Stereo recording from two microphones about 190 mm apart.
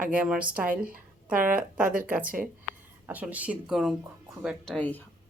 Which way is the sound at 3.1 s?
10° right (ahead or behind).